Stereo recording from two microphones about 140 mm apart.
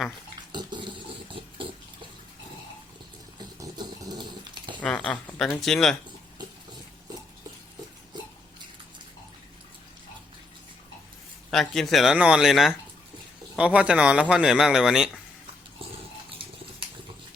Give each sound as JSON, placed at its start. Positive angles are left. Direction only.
{"t": 0.5, "sound": "a sound", "side_deg": -35}
{"t": 3.3, "sound": "dog", "side_deg": -30}
{"t": 4.8, "sound": "speech", "side_deg": 5}
{"t": 11.5, "sound": "speech", "side_deg": 0}